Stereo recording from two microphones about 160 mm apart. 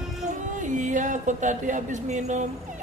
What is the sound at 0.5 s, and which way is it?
Speech, 50° right (ahead or behind).